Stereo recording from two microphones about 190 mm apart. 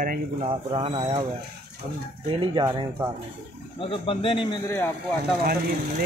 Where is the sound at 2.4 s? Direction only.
25° right (ahead or behind).